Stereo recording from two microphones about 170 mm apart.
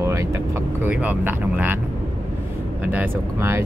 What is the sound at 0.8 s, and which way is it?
Speech, 10° right (ahead or behind).